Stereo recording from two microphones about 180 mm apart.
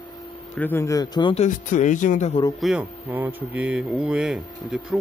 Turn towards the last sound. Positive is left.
turn(degrees=-5)  # may be behind; listen again after turning